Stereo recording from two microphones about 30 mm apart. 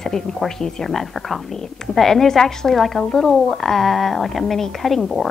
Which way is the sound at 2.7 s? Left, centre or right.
Centre.